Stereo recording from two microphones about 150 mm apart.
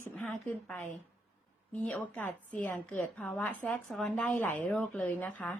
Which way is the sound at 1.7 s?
10° left (ahead or behind).